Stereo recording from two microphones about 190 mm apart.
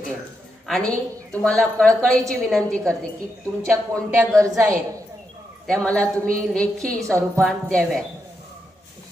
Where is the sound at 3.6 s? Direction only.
15° right (ahead or behind).